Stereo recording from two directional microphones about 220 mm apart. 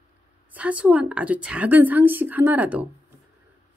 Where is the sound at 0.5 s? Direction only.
5° right (ahead or behind).